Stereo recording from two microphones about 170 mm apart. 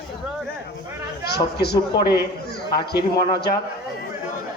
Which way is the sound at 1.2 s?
70° left (ahead or behind).